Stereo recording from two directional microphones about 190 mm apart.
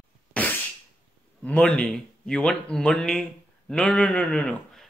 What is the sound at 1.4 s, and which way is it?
A man's voice, 5° left (ahead or behind).